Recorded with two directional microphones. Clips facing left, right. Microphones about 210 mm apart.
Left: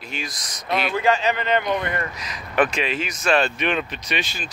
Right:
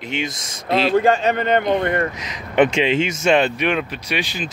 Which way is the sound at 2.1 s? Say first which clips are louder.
Right 4 dB; 20° right (ahead or behind).